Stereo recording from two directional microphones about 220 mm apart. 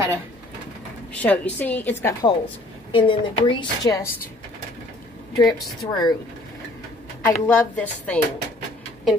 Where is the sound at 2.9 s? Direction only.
25° left (ahead or behind).